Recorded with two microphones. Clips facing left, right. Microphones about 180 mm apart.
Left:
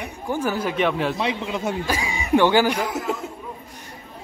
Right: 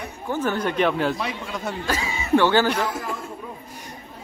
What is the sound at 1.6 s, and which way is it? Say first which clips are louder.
Speech: even; 10° left (ahead or behind).